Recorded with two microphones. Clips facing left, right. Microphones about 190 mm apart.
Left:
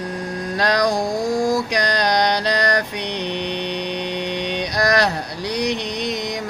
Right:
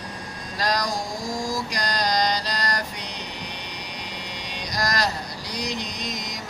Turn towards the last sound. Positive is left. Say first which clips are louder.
# left 9 dB
turn(degrees=65)  # may be behind; listen again after turning